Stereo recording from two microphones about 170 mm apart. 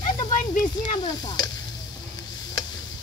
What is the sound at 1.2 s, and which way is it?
Stir, 25° left (ahead or behind).